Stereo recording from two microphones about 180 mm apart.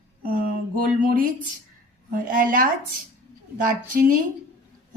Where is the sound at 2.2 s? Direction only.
50° right (ahead or behind).